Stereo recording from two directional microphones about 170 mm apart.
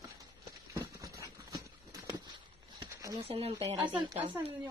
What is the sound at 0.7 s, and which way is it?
Horse, 20° right (ahead or behind).